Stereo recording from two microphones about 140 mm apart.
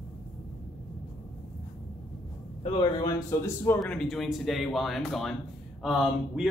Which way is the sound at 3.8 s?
5° left (ahead or behind).